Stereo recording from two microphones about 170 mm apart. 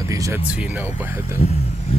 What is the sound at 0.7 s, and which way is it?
Speech, 10° right (ahead or behind).